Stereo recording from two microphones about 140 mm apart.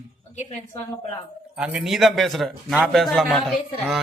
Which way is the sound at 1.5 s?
5° right (ahead or behind).